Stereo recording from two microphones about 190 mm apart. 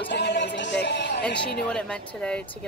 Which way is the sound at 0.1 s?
65° left (ahead or behind).